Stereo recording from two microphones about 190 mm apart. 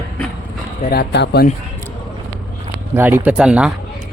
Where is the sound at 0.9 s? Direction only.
55° left (ahead or behind).